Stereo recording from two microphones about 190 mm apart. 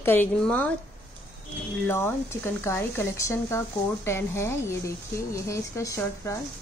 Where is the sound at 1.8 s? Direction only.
15° left (ahead or behind).